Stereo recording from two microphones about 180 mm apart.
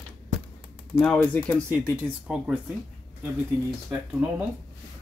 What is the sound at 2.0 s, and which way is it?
Speech, 5° right (ahead or behind).